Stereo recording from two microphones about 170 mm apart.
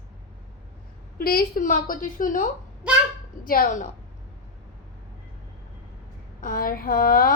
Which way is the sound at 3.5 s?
55° left (ahead or behind).